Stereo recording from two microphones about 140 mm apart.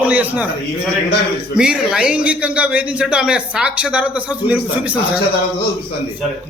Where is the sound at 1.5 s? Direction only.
5° right (ahead or behind).